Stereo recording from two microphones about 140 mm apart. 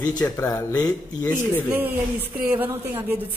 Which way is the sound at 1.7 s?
15° right (ahead or behind).